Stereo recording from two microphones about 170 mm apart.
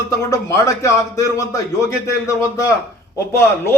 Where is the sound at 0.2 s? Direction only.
15° left (ahead or behind).